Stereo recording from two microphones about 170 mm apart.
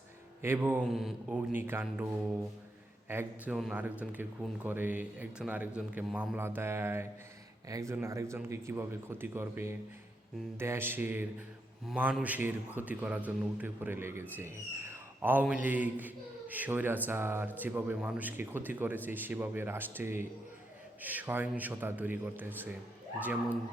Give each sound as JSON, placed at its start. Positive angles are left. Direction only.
{"t": 0.4, "sound": "a man's voice", "side_deg": -10}
{"t": 0.8, "sound": "a man's voice", "side_deg": 0}
{"t": 3.1, "sound": "a man's voice", "side_deg": -10}